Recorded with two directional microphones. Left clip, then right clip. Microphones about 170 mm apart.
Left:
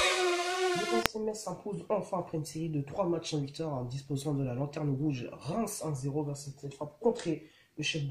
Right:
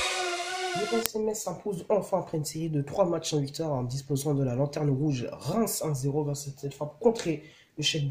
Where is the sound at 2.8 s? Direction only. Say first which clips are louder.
Right 6 dB; 40° right (ahead or behind).